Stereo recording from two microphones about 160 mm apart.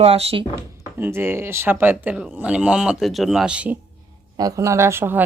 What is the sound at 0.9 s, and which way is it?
Speech, 15° right (ahead or behind).